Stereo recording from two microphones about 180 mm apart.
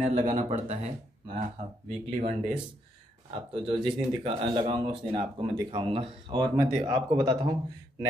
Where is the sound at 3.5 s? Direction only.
30° right (ahead or behind).